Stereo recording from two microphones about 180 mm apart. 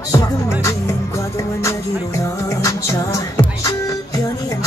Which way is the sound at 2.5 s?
15° left (ahead or behind).